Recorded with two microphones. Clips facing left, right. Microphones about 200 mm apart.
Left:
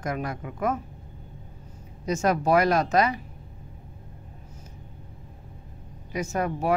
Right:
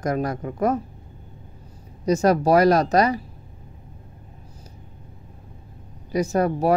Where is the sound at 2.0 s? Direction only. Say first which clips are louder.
Right 5 dB; 35° right (ahead or behind).